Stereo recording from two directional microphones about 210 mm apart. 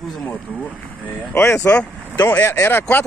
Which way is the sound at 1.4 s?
15° left (ahead or behind).